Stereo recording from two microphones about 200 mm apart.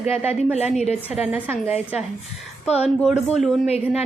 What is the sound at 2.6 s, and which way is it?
Speech, 30° left (ahead or behind).